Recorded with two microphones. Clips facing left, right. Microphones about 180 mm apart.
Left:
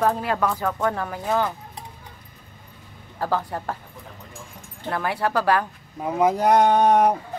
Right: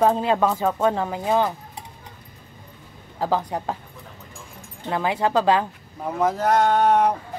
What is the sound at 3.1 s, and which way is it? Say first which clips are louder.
Speech: right 2 dB; 15° right (ahead or behind).